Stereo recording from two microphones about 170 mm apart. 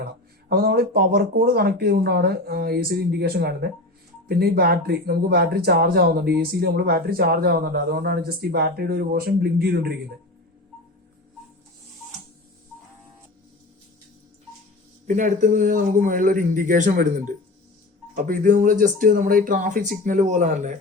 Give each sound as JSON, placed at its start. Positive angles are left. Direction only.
{"t": 0.0, "sound": "speech", "side_deg": -65}
{"t": 15.0, "sound": "speech", "side_deg": -45}